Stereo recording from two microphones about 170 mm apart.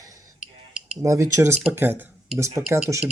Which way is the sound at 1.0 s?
20° right (ahead or behind).